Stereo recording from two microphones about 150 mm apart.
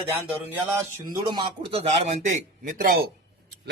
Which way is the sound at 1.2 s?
30° right (ahead or behind).